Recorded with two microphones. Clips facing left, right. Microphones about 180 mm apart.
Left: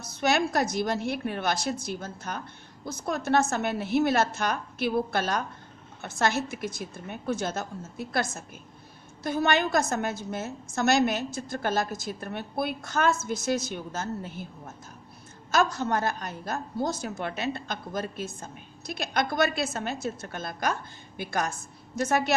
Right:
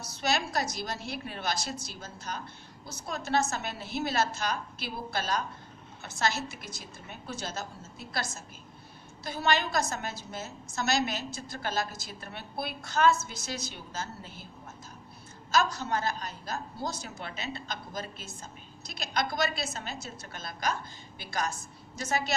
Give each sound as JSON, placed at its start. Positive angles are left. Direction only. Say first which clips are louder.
{"t": 0.1, "sound": "a woman's voice", "louder": "left 5 dB", "side_deg": 55}
{"t": 15.5, "sound": "a woman's voice", "louder": "left 3 dB", "side_deg": 55}